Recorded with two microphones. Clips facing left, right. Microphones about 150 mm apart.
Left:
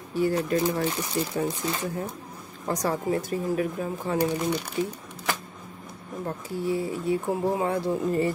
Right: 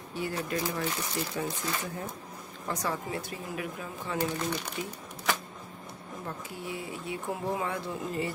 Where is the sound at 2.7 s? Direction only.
40° left (ahead or behind).